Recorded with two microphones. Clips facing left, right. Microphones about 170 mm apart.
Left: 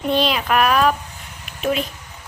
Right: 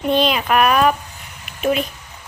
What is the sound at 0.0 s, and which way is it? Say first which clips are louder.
Speech: right 2 dB; centre (ahead or behind).